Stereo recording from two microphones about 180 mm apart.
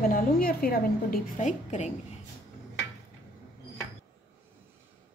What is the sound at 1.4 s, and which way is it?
Speech, 40° left (ahead or behind).